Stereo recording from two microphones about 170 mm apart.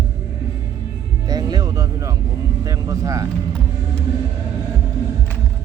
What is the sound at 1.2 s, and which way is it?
Music, 20° right (ahead or behind).